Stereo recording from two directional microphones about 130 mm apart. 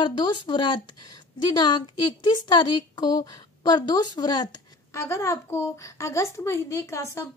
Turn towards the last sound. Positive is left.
turn(degrees=20)  # may be behind; listen again after turning